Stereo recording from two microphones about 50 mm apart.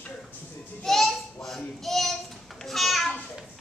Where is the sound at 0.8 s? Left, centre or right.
Centre.